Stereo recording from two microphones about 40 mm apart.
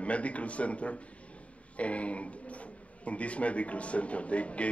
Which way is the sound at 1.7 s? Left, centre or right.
Left.